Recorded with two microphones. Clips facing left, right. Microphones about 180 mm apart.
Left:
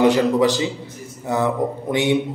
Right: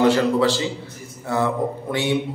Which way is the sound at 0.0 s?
15° left (ahead or behind).